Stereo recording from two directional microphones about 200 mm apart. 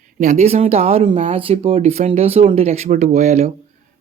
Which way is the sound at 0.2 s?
35° right (ahead or behind).